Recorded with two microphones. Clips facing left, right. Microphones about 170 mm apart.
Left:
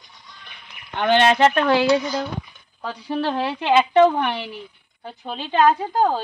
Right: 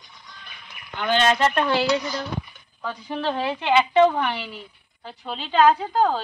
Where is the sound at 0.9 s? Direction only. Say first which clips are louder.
Left 4 dB; 65° left (ahead or behind).